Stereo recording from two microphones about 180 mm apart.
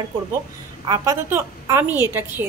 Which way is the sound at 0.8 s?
20° right (ahead or behind).